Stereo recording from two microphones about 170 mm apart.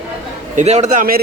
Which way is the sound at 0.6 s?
40° right (ahead or behind).